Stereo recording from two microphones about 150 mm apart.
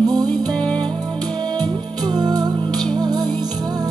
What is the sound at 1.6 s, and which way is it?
Music, 25° right (ahead or behind).